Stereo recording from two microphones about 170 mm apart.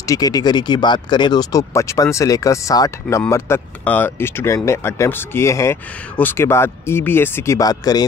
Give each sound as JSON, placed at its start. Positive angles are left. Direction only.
{"t": 0.0, "sound": "speech", "side_deg": 20}